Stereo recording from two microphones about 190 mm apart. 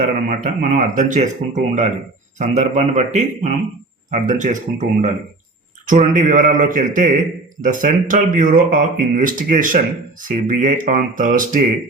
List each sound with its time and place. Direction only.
0.0 s speech: 45° right (ahead or behind)